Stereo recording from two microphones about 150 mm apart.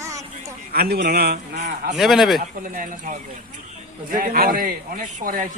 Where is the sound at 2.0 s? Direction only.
Centre (ahead or behind).